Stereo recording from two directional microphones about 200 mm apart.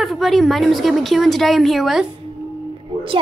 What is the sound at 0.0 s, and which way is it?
A woman's voice, centre (ahead or behind).